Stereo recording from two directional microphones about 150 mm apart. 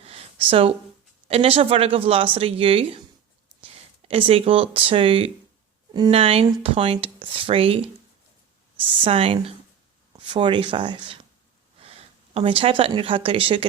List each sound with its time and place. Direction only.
0.0 s a sound: 40° right (ahead or behind)
1.3 s speech: 40° right (ahead or behind)
9.0 s speech: 40° right (ahead or behind)